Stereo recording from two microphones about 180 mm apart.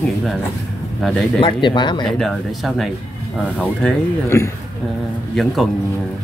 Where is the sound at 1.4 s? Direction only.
25° left (ahead or behind).